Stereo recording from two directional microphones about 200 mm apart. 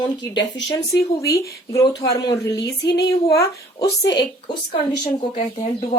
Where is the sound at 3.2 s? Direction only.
15° left (ahead or behind).